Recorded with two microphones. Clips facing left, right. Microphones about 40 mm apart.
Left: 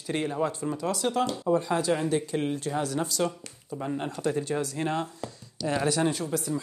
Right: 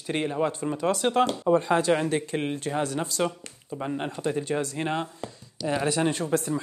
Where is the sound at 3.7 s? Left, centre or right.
Centre.